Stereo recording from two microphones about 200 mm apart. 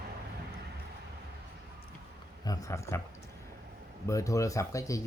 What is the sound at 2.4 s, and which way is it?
Speech, 15° left (ahead or behind).